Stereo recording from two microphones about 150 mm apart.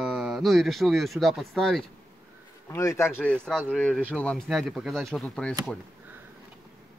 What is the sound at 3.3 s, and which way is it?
A man's voice, 5° left (ahead or behind).